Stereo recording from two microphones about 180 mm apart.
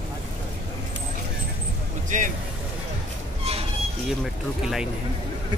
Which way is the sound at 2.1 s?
45° right (ahead or behind).